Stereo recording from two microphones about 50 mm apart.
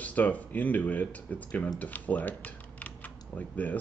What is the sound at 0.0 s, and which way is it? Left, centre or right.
Speech, left.